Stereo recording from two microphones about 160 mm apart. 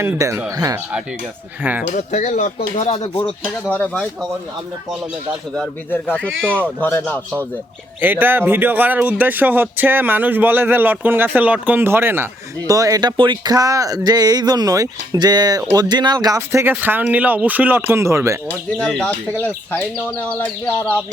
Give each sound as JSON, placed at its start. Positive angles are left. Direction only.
{"t": 0.0, "sound": "speech", "side_deg": -15}
{"t": 1.9, "sound": "speech", "side_deg": 50}
{"t": 3.2, "sound": "speech", "side_deg": 5}
{"t": 5.9, "sound": "speech", "side_deg": 10}
{"t": 8.0, "sound": "speech", "side_deg": -10}
{"t": 18.8, "sound": "speech", "side_deg": 5}